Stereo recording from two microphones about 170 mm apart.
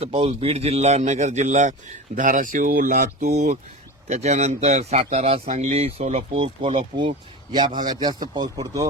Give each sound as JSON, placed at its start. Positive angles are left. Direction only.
{"t": 0.0, "sound": "speech", "side_deg": -35}
{"t": 3.3, "sound": "speech", "side_deg": -45}